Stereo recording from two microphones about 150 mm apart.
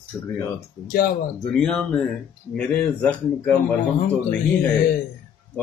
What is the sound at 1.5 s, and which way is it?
A man's voice, 5° left (ahead or behind).